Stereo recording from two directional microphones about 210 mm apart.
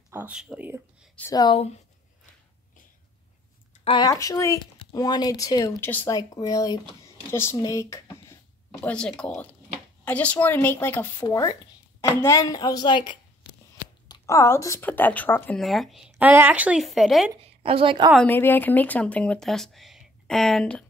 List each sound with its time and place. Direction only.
0.1 s speech: 5° right (ahead or behind)
1.1 s speech: 15° left (ahead or behind)
3.8 s speech: 20° left (ahead or behind); by 17.3 s centre (ahead or behind)
17.4 s a woman's voice: 25° right (ahead or behind)
18.1 s speech: 10° left (ahead or behind)